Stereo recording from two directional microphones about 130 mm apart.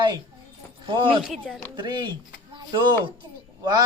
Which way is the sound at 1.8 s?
35° right (ahead or behind).